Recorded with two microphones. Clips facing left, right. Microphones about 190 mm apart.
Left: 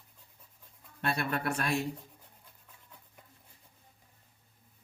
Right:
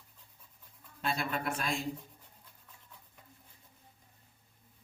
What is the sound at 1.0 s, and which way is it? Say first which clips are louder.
Speech: left 2 dB; 65° left (ahead or behind).